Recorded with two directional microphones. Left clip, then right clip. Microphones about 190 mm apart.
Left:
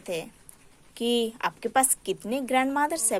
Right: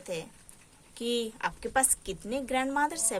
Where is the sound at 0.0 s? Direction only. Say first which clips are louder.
Left 4 dB; 30° left (ahead or behind).